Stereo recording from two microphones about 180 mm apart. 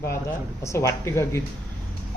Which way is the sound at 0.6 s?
15° left (ahead or behind).